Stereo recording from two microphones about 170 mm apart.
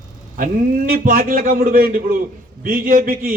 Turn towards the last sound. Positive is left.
turn(degrees=-55)  # may be behind; listen again after turning